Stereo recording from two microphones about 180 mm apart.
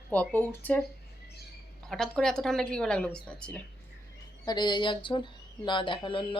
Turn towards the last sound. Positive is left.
turn(degrees=30)  # may be behind; listen again after turning